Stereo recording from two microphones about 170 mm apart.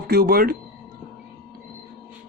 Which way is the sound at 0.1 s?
65° right (ahead or behind).